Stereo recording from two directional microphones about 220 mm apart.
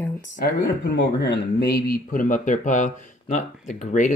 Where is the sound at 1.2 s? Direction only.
45° left (ahead or behind).